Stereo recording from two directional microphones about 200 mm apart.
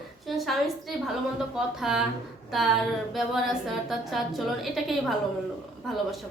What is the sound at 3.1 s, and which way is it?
A woman's voice, centre (ahead or behind).